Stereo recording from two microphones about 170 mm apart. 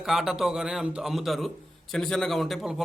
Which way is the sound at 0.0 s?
Centre (ahead or behind).